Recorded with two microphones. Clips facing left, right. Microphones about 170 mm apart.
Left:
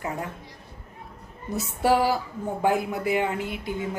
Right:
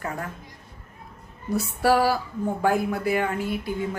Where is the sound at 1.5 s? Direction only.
20° left (ahead or behind).